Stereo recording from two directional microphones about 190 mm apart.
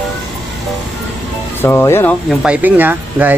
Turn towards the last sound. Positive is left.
turn(degrees=-10)  # may be behind; listen again after turning